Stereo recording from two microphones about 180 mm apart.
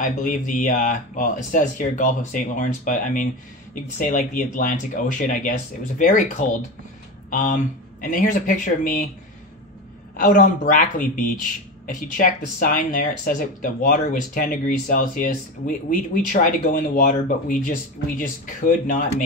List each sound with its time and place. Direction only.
0.0 s speech: 45° left (ahead or behind)
10.1 s speech: 45° left (ahead or behind)